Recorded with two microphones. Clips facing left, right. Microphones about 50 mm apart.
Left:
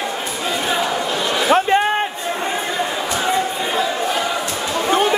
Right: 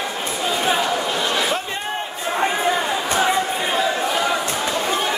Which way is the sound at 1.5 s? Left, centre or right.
Left.